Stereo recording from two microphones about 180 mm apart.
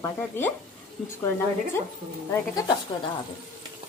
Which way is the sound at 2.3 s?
20° left (ahead or behind).